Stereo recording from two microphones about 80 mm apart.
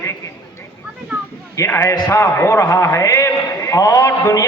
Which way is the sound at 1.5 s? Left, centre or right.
Left.